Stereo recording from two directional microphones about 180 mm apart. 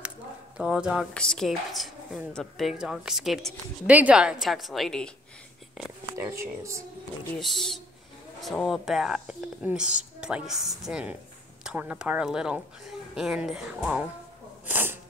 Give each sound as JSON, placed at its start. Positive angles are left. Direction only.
{"t": 0.6, "sound": "speech", "side_deg": -5}
{"t": 6.1, "sound": "speech", "side_deg": -15}
{"t": 7.3, "sound": "speech", "side_deg": 0}